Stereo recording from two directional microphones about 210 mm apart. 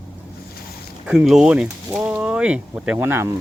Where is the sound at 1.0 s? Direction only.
5° right (ahead or behind).